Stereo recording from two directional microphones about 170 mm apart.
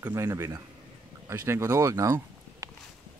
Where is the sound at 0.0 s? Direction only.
15° right (ahead or behind).